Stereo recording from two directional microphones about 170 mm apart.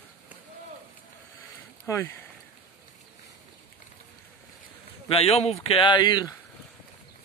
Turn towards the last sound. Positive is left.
turn(degrees=25)  # may be behind; listen again after turning